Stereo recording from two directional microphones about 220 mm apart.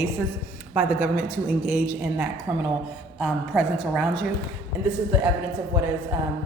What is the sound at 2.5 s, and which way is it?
Speech, 20° right (ahead or behind).